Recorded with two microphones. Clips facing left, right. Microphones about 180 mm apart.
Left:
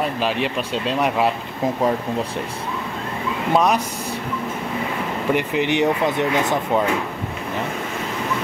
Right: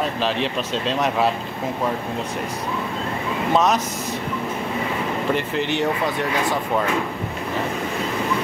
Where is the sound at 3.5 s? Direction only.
10° left (ahead or behind).